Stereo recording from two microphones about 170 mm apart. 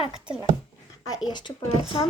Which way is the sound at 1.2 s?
25° left (ahead or behind).